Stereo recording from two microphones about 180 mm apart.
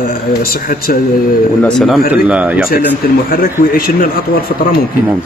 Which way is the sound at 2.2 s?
10° right (ahead or behind).